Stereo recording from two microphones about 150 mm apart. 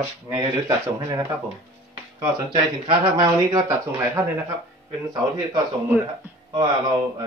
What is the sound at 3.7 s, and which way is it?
Speech, 20° right (ahead or behind).